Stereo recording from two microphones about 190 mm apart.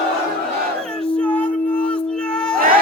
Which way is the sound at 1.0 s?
5° left (ahead or behind).